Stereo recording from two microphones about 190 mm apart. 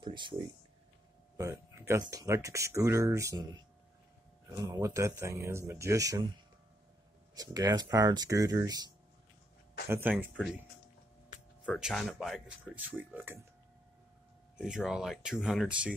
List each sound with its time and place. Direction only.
0.0 s speech: 25° right (ahead or behind)
7.3 s speech: 20° right (ahead or behind)
10.1 s speech: centre (ahead or behind)
11.6 s speech: centre (ahead or behind)
14.6 s speech: 5° right (ahead or behind)